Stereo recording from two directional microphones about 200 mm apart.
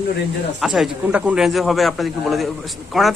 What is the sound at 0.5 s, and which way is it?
Speech, centre (ahead or behind).